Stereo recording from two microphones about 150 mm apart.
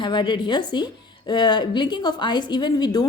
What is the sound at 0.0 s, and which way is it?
A woman's voice, 30° left (ahead or behind).